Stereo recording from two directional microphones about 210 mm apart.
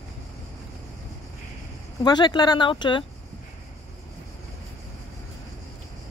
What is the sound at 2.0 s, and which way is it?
Speech, 20° left (ahead or behind).